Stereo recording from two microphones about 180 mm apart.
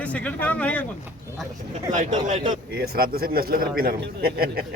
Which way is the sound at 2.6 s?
60° right (ahead or behind).